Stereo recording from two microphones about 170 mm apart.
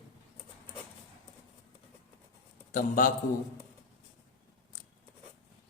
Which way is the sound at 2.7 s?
50° left (ahead or behind).